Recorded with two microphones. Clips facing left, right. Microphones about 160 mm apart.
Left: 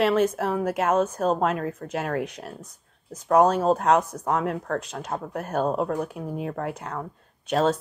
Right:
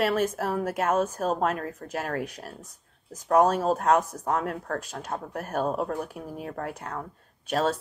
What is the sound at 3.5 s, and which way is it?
A woman's voice, 30° left (ahead or behind).